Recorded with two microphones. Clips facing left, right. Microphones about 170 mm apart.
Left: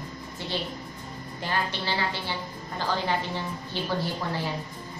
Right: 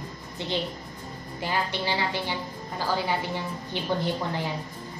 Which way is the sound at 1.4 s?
15° right (ahead or behind).